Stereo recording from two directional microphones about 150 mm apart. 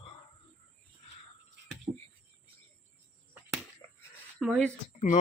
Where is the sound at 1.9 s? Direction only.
45° right (ahead or behind).